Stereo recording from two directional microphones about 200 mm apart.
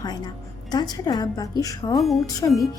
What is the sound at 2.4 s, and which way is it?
Speech, 15° left (ahead or behind).